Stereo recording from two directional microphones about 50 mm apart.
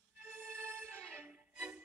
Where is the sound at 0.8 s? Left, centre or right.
Right.